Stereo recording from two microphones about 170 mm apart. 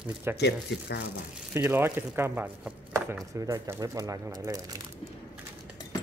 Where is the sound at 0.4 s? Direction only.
85° left.